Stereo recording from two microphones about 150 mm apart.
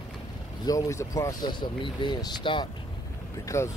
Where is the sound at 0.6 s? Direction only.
20° left (ahead or behind).